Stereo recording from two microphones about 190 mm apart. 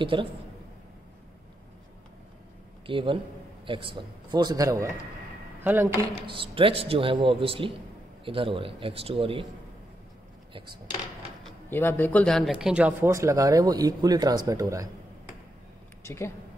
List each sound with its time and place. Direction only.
0.0 s a man's voice: 25° right (ahead or behind)
2.9 s a man's voice: 25° right (ahead or behind); by 6.0 s 10° right (ahead or behind)
6.2 s a man's voice: 30° right (ahead or behind)
11.4 s speech: 10° left (ahead or behind); by 14.9 s 15° right (ahead or behind)
16.0 s speech: 15° left (ahead or behind)